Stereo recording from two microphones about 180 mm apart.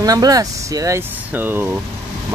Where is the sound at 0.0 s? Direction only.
20° right (ahead or behind).